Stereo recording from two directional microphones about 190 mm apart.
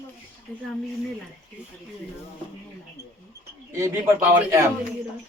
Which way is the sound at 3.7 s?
15° right (ahead or behind).